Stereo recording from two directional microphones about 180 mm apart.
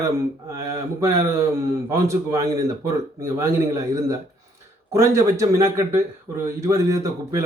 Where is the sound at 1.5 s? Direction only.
15° right (ahead or behind).